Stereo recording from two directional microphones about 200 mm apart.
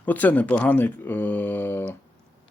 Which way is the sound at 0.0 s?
10° left (ahead or behind).